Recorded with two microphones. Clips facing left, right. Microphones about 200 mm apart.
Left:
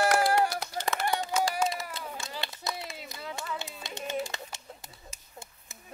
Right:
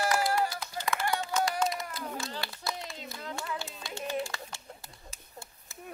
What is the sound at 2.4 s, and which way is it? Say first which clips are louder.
Clapping: even; 20° left (ahead or behind).